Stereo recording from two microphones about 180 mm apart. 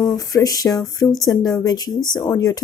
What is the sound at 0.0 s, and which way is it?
Speech, 20° left (ahead or behind).